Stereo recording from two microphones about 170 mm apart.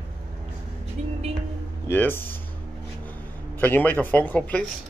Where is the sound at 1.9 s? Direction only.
10° left (ahead or behind).